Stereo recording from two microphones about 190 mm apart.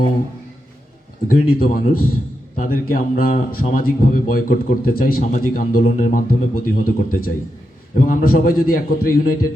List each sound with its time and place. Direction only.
1.3 s a man's voice: 50° left (ahead or behind)